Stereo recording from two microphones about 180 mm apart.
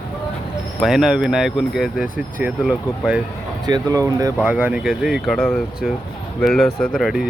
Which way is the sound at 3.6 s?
20° right (ahead or behind).